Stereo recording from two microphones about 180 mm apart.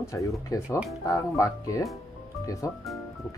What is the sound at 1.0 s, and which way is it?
Speech, 15° left (ahead or behind).